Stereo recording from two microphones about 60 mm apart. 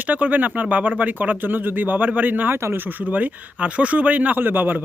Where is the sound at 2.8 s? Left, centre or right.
Right.